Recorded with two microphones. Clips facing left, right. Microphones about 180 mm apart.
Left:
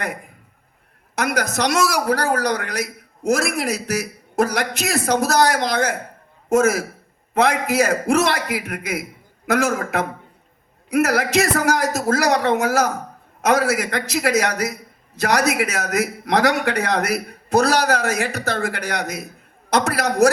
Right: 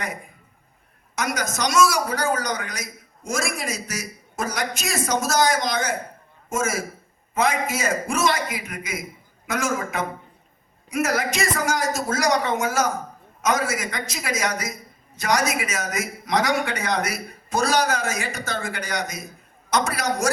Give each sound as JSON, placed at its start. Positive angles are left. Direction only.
{"t": 1.1, "sound": "a man's voice", "side_deg": 65}